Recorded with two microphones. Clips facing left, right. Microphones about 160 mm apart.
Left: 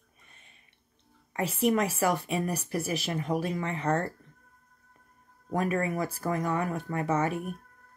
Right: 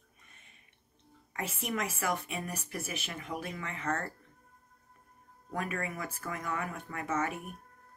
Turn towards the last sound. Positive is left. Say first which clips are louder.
# left 6 dB
turn(degrees=35)  # may be behind; listen again after turning